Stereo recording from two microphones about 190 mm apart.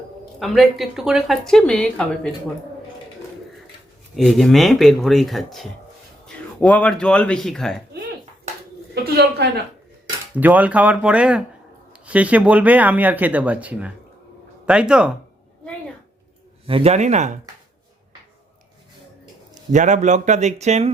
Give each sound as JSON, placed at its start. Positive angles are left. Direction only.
{"t": 0.3, "sound": "speech", "side_deg": 0}
{"t": 4.1, "sound": "speech", "side_deg": 0}
{"t": 9.0, "sound": "a woman's voice", "side_deg": -55}
{"t": 10.3, "sound": "speech", "side_deg": -10}
{"t": 16.6, "sound": "speech", "side_deg": -30}
{"t": 19.7, "sound": "speech", "side_deg": -40}